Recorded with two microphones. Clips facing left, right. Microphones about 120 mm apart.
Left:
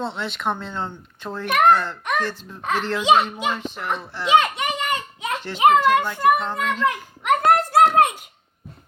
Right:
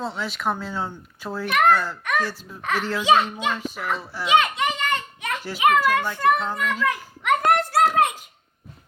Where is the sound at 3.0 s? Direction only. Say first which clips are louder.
Left 1 dB; 20° left (ahead or behind).